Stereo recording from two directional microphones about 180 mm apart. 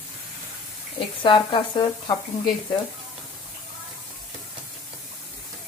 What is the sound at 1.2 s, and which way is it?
Speech, 25° left (ahead or behind).